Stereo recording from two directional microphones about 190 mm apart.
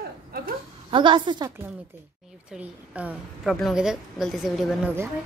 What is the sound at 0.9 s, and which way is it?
Speech, 25° right (ahead or behind).